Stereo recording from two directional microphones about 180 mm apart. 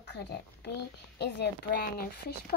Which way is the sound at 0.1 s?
70° left (ahead or behind).